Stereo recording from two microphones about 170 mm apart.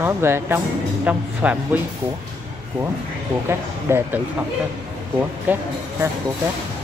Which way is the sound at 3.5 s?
15° right (ahead or behind).